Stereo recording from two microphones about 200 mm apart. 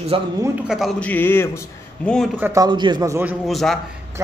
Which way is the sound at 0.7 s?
Centre (ahead or behind).